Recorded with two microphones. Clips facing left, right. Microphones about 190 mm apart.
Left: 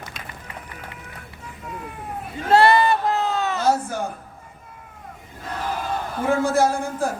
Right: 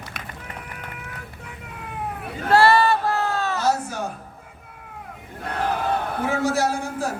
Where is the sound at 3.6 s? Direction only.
55° left (ahead or behind).